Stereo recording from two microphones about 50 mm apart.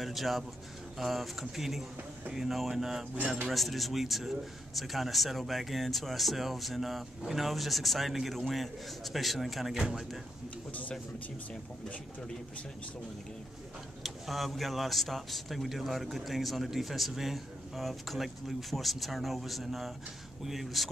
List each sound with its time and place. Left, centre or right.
0.0 s a man's voice: centre
9.8 s speech: centre
10.7 s speech: left
14.0 s a man's voice: centre